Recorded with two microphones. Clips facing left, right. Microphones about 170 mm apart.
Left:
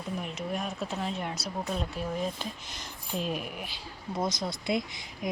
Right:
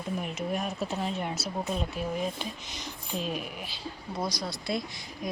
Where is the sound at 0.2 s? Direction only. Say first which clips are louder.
Right 2 dB; centre (ahead or behind).